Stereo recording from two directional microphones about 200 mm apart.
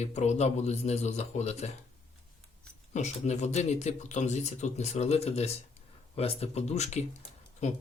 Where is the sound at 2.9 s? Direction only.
35° left (ahead or behind).